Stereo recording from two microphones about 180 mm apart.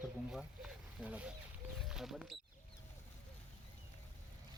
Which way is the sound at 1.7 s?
Centre (ahead or behind).